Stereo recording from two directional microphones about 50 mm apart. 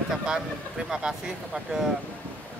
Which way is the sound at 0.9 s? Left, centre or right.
Centre.